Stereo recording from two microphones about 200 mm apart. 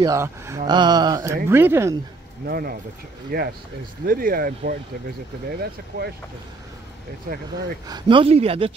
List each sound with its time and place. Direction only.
0.0 s speech: 15° right (ahead or behind)
2.4 s speech: 45° right (ahead or behind)
7.9 s speech: 25° right (ahead or behind)